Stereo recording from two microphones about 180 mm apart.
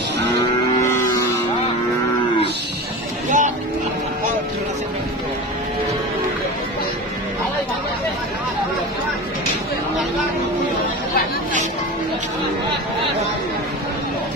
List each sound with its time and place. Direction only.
3.3 s music: 45° right (ahead or behind)